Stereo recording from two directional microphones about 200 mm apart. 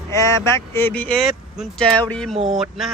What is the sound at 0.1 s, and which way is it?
Speech, 15° left (ahead or behind).